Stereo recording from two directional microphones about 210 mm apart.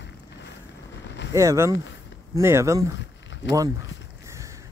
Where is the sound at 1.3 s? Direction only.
15° right (ahead or behind).